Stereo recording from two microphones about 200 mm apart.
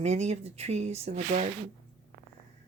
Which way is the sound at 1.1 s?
45° right (ahead or behind).